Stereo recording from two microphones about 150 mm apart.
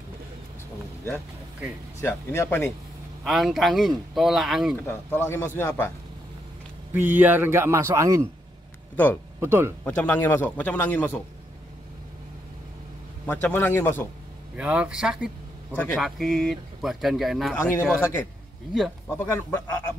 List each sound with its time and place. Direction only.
2.0 s a man's voice: 20° left (ahead or behind)
3.3 s speech: centre (ahead or behind)
4.8 s a man's voice: 15° left (ahead or behind)
6.9 s a man's voice: 10° right (ahead or behind)
8.9 s a man's voice: 10° left (ahead or behind)
9.4 s a man's voice: 15° right (ahead or behind)
9.8 s a man's voice: 10° left (ahead or behind)
13.3 s a man's voice: 10° left (ahead or behind)
14.6 s a man's voice: 5° right (ahead or behind)
17.6 s a man's voice: 15° left (ahead or behind)